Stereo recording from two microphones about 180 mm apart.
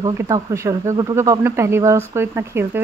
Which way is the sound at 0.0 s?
20° right (ahead or behind).